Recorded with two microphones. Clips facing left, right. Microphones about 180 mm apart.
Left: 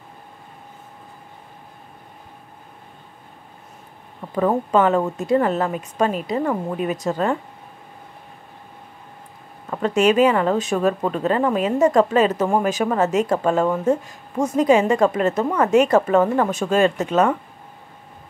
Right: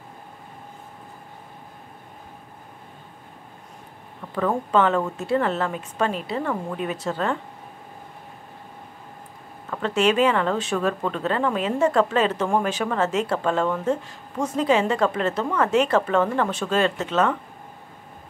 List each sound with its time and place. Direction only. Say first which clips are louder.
4.4 s a woman's voice: left 4 dB; 20° left (ahead or behind)
4.7 s speech: left 2 dB; 10° left (ahead or behind)
9.8 s speech: left 4 dB; 10° left (ahead or behind)